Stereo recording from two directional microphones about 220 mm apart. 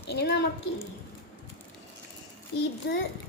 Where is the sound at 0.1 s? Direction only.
50° left (ahead or behind).